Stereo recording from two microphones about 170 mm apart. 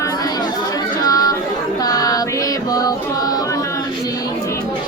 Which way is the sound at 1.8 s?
20° left (ahead or behind).